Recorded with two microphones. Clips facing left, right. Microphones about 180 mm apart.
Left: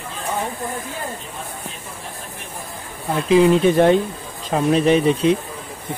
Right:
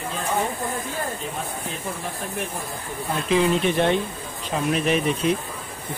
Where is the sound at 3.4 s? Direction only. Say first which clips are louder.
Left 8 dB; 40° left (ahead or behind).